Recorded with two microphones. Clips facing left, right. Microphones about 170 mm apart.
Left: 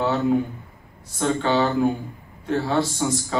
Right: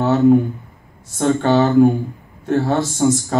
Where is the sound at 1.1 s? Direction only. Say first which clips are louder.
Right 6 dB; 45° right (ahead or behind).